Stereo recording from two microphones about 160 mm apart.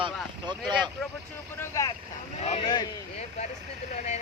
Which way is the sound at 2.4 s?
40° left (ahead or behind).